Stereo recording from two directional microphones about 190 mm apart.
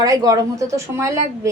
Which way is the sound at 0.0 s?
20° right (ahead or behind).